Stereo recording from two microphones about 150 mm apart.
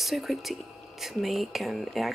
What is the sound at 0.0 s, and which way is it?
Speech, centre (ahead or behind).